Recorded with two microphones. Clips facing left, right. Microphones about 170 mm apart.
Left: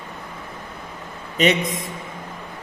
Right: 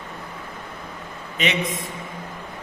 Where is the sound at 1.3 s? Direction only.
40° left (ahead or behind).